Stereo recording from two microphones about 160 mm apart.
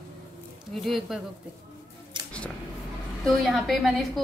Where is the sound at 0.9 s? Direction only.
Centre (ahead or behind).